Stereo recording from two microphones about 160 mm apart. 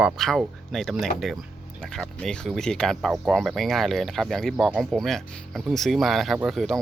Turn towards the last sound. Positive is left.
turn(degrees=0)  # may be behind; listen again after turning